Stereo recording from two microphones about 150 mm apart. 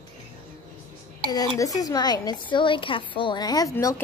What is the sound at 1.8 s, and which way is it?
A woman's voice, 25° left (ahead or behind).